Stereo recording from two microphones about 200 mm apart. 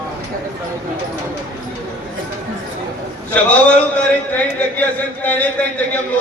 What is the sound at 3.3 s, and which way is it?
Speech, 5° left (ahead or behind).